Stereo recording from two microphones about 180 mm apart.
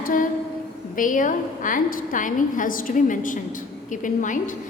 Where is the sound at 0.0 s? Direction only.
50° left (ahead or behind).